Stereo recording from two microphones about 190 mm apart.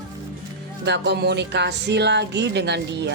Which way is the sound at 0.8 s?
65° right (ahead or behind).